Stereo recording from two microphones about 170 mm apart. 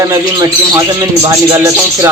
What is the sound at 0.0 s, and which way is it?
Speech, 20° right (ahead or behind).